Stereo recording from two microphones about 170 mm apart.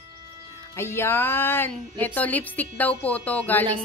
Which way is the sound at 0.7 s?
15° left (ahead or behind).